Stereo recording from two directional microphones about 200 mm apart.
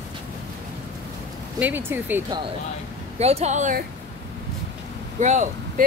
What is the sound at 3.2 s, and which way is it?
Speech, 30° right (ahead or behind).